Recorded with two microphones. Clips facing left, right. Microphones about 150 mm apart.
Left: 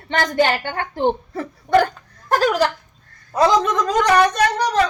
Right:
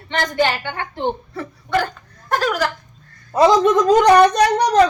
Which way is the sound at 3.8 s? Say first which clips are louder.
Right 5 dB; 30° right (ahead or behind).